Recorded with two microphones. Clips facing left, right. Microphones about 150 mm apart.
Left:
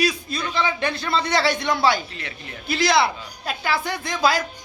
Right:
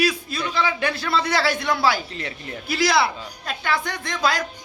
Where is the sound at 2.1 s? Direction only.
35° right (ahead or behind).